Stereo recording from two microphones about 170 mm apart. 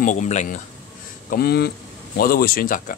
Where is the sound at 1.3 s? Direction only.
65° left (ahead or behind).